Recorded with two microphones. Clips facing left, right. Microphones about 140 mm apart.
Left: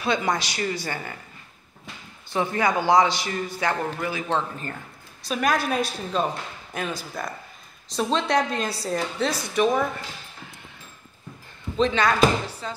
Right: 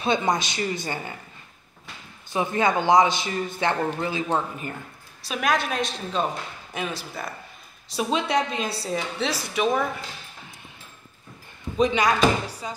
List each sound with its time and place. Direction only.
0.0 s a man's voice: 20° right (ahead or behind)
2.3 s a man's voice: 20° right (ahead or behind)
4.3 s speech: 10° right (ahead or behind)
5.3 s a woman's voice: centre (ahead or behind)
11.7 s speech: 10° right (ahead or behind)